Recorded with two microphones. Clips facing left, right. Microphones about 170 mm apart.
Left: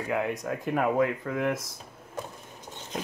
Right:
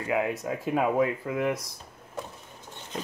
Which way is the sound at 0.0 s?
Centre (ahead or behind).